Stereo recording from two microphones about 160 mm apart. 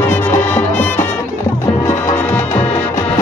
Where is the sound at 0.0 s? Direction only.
15° left (ahead or behind).